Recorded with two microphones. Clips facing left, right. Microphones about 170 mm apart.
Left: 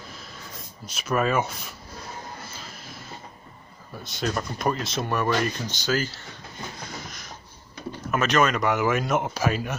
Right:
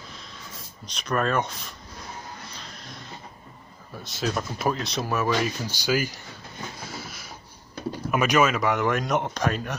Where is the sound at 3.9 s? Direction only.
Centre (ahead or behind).